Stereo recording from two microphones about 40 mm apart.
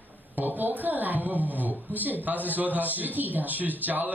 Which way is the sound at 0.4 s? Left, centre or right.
Right.